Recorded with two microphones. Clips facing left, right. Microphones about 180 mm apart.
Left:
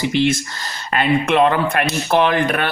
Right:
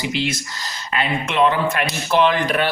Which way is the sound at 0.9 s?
55° left (ahead or behind).